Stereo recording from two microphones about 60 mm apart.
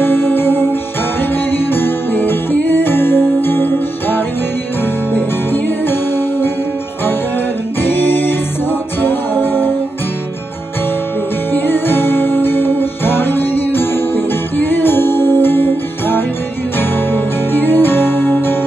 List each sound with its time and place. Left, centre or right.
0.0 s music: left
7.8 s music: left
11.5 s music: left